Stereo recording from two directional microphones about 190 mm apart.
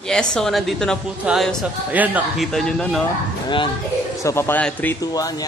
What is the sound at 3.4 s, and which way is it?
Speech, 25° left (ahead or behind).